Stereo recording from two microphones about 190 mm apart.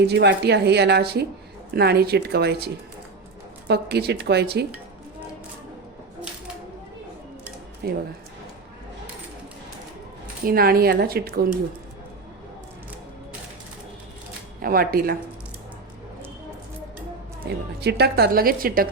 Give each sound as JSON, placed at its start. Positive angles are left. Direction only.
{"t": 0.0, "sound": "speech", "side_deg": -65}
{"t": 7.8, "sound": "speech", "side_deg": -55}
{"t": 10.4, "sound": "a woman's voice", "side_deg": -50}
{"t": 14.6, "sound": "a woman's voice", "side_deg": -50}
{"t": 17.7, "sound": "a woman's voice", "side_deg": -55}